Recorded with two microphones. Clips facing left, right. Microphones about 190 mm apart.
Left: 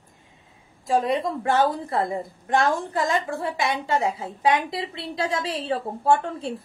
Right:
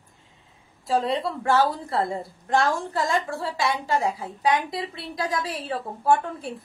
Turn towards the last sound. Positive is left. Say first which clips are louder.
# left 1 dB
turn(degrees=25)  # may be behind; listen again after turning